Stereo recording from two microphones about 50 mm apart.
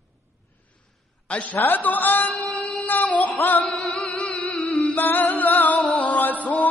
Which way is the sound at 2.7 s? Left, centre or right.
Left.